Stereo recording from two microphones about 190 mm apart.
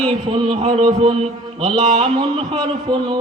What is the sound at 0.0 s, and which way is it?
A man's voice, 30° right (ahead or behind).